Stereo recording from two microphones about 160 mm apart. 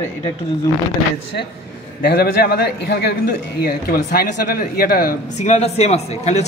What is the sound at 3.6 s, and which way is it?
Speech, 70° left (ahead or behind).